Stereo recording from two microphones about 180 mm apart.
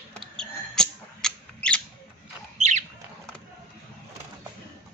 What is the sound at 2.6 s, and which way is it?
Squawk, 40° right (ahead or behind).